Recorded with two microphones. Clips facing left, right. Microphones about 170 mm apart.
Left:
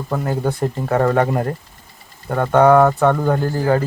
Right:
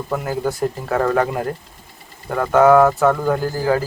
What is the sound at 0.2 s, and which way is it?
Speech, centre (ahead or behind).